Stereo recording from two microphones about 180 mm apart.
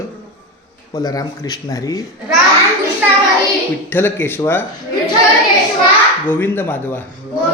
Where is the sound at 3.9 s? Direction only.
10° left (ahead or behind).